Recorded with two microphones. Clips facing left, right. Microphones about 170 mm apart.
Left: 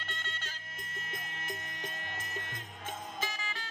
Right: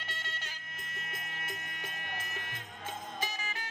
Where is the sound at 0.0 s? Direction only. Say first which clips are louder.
Left 1 dB; 10° right (ahead or behind).